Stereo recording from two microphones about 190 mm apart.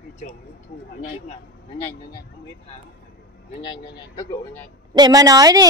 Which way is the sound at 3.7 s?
20° left (ahead or behind).